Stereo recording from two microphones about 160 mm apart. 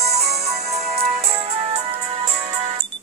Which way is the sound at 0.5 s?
40° right (ahead or behind).